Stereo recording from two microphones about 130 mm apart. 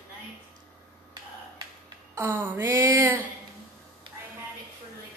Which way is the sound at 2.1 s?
15° right (ahead or behind).